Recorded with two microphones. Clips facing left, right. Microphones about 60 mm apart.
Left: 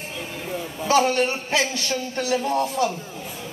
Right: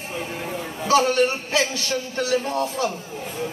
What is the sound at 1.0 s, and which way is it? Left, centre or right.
Speech, left.